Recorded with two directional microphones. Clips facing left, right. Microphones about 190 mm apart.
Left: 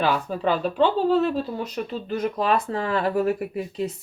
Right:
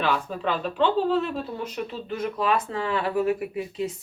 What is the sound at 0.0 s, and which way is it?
Speech, 40° left (ahead or behind).